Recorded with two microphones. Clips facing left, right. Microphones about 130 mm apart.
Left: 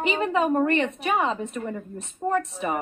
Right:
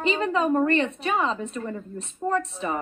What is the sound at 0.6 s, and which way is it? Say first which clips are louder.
A woman's voice: even; 30° right (ahead or behind).